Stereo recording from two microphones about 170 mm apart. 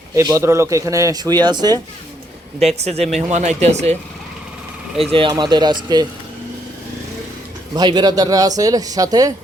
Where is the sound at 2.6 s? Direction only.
40° right (ahead or behind).